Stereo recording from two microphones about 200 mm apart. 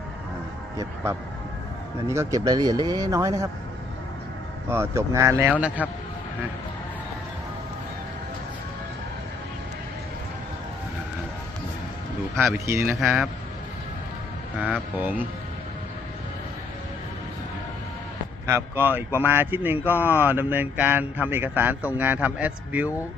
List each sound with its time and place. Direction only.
2.0 s speech: 15° right (ahead or behind)
4.7 s speech: 15° right (ahead or behind)
12.6 s speech: 15° right (ahead or behind)
13.0 s a man's voice: centre (ahead or behind)
14.6 s speech: 5° right (ahead or behind)
18.4 s speech: 10° right (ahead or behind)